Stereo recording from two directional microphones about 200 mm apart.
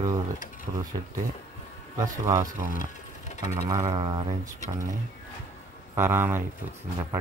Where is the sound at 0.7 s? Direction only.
30° right (ahead or behind).